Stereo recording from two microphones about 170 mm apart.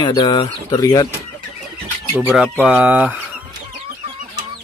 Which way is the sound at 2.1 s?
5° right (ahead or behind).